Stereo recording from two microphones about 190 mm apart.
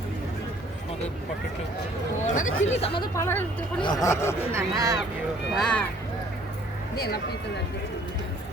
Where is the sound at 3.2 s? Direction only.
10° left (ahead or behind).